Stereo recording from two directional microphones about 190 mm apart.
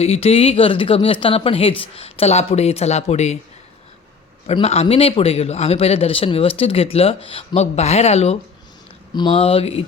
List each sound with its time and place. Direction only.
0.0 s a man's voice: 30° left (ahead or behind)
4.4 s a man's voice: 35° left (ahead or behind)